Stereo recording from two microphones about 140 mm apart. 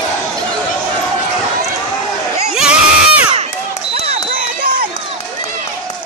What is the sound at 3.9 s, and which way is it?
Basketball bounce, 50° right (ahead or behind).